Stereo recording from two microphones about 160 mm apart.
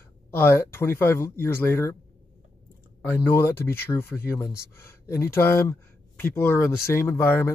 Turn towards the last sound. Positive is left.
turn(degrees=15)  # may be behind; listen again after turning